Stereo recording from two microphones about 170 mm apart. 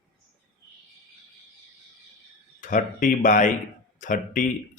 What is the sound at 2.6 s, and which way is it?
Speech, 50° left (ahead or behind).